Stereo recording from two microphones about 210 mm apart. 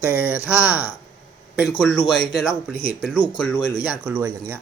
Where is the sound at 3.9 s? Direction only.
5° right (ahead or behind).